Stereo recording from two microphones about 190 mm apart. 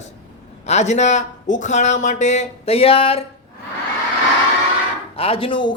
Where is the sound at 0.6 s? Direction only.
35° left (ahead or behind).